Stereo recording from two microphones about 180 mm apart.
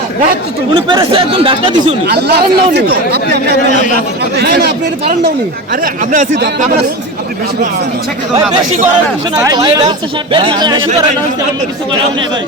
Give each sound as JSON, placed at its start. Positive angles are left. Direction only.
{"t": 0.7, "sound": "speech", "side_deg": -25}
{"t": 2.0, "sound": "speech", "side_deg": -65}
{"t": 5.8, "sound": "speech", "side_deg": -45}
{"t": 9.3, "sound": "speech", "side_deg": -20}